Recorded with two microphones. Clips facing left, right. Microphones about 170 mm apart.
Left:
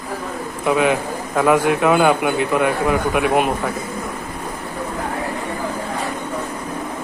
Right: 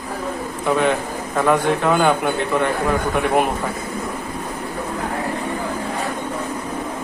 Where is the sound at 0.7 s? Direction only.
5° left (ahead or behind).